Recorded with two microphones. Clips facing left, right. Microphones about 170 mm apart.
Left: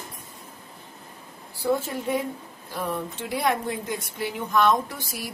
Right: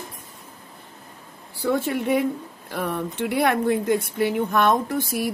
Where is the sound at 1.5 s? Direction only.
70° right (ahead or behind).